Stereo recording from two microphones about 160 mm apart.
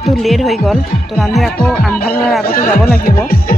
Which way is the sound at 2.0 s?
70° left (ahead or behind).